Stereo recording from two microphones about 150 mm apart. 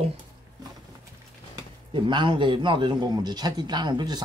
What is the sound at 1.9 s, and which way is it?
A man's voice, 30° right (ahead or behind).